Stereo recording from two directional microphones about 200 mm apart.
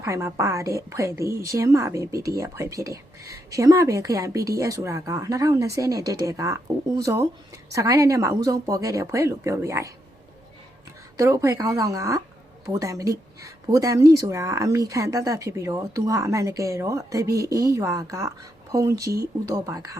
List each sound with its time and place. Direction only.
0.0 s a woman's voice: 15° right (ahead or behind)
11.2 s a woman's voice: 15° right (ahead or behind)